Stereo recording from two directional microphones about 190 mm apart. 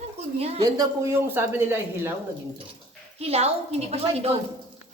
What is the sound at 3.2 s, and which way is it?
Speech, 35° right (ahead or behind).